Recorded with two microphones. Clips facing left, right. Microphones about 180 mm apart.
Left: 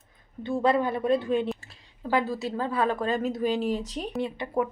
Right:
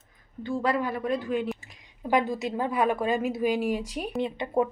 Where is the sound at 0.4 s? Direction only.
25° left (ahead or behind).